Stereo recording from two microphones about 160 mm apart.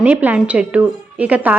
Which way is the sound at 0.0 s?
10° right (ahead or behind).